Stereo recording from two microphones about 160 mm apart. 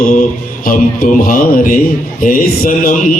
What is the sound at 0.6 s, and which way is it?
Music, 60° left (ahead or behind).